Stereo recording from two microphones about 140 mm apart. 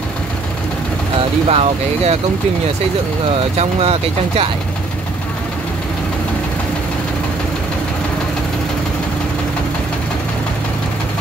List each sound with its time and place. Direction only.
1.5 s speech: 45° right (ahead or behind)
3.5 s speech: 45° right (ahead or behind)